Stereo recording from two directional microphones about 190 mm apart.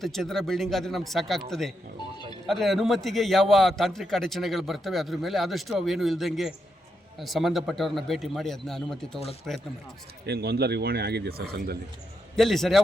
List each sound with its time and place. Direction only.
0.0 s a man's voice: centre (ahead or behind)
10.2 s a man's voice: 55° right (ahead or behind)
12.4 s a man's voice: centre (ahead or behind)